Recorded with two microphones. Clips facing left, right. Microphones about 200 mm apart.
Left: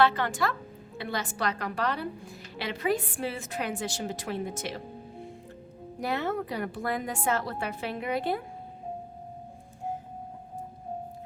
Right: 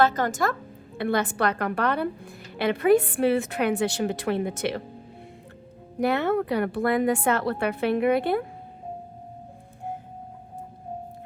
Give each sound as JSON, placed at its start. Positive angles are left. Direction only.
{"t": 0.0, "sound": "a woman's voice", "side_deg": -45}
{"t": 0.9, "sound": "a woman's voice", "side_deg": -55}
{"t": 6.0, "sound": "a woman's voice", "side_deg": -65}